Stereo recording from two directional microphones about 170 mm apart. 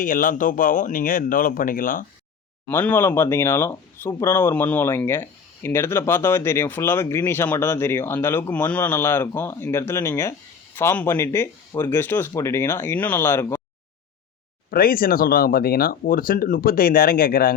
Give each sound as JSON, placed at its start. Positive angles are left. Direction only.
{"t": 0.0, "sound": "speech", "side_deg": 50}
{"t": 2.6, "sound": "speech", "side_deg": 10}
{"t": 14.7, "sound": "speech", "side_deg": 60}